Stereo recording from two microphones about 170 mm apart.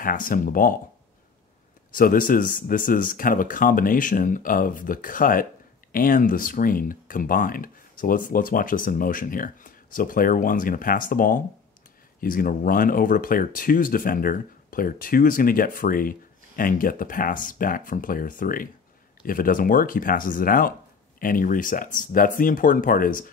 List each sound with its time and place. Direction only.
0.0 s speech: 55° left (ahead or behind)
2.0 s speech: 55° left (ahead or behind)